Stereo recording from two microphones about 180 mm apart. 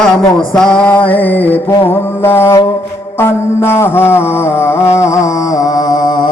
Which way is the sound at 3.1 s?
15° left (ahead or behind).